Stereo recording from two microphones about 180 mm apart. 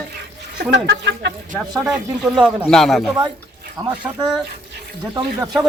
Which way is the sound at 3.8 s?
20° right (ahead or behind).